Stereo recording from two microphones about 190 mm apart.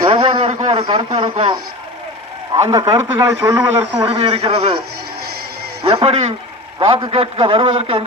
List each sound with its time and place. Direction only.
0.0 s a sound: 25° right (ahead or behind)
1.2 s a man's voice: 25° right (ahead or behind)
2.6 s a man's voice: 20° right (ahead or behind)
4.0 s speech: 30° right (ahead or behind)
5.8 s a man's voice: 30° right (ahead or behind)